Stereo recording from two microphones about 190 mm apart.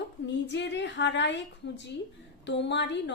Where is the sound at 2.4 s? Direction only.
70° left (ahead or behind).